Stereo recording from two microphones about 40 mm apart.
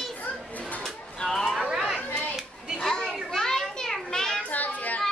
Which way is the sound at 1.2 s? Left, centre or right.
Centre.